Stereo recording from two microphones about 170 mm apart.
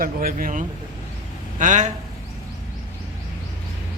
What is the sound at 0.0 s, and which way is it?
A man's voice, 60° right (ahead or behind).